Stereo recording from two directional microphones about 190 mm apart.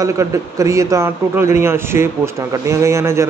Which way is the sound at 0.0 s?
15° right (ahead or behind).